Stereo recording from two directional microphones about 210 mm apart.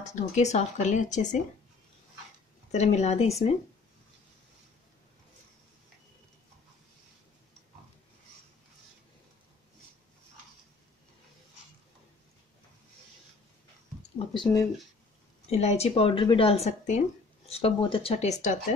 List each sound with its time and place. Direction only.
0.0 s speech: 35° left (ahead or behind)
2.7 s speech: 30° left (ahead or behind)
14.1 s a woman's voice: 20° left (ahead or behind)
15.5 s a woman's voice: 30° left (ahead or behind)